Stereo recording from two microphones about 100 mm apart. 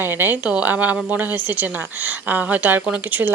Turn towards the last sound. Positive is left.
turn(degrees=-20)  # may be behind; listen again after turning